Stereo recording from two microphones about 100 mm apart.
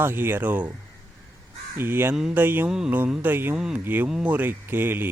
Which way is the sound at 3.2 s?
20° right (ahead or behind).